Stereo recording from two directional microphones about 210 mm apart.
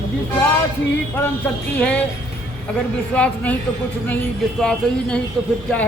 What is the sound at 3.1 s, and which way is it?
Speech, 5° left (ahead or behind).